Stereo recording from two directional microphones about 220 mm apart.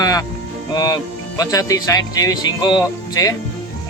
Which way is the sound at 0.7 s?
15° left (ahead or behind).